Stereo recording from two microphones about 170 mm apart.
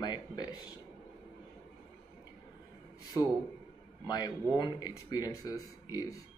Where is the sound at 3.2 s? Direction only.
20° left (ahead or behind).